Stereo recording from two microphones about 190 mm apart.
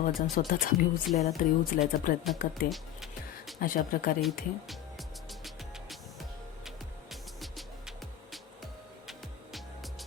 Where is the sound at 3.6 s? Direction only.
50° left (ahead or behind).